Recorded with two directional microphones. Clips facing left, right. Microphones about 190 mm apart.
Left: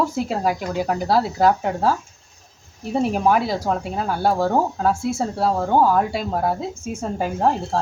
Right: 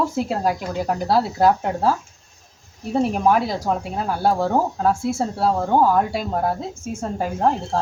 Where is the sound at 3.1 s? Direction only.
Centre (ahead or behind).